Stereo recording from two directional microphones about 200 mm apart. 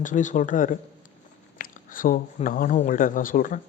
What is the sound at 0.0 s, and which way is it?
Speech, 40° left (ahead or behind).